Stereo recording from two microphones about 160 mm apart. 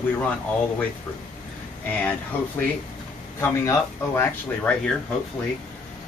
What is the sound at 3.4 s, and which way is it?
Speech, 15° left (ahead or behind).